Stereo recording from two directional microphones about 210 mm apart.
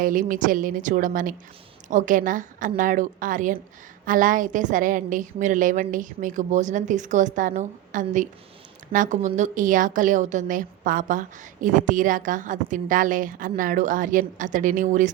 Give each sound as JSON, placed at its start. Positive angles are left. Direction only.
{"t": 0.0, "sound": "a woman's voice", "side_deg": -40}